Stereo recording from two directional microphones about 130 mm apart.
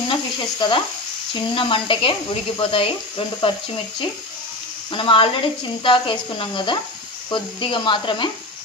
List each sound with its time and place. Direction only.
0.1 s a sound: 40° left (ahead or behind)
1.3 s speech: 40° left (ahead or behind)
4.9 s speech: 40° left (ahead or behind)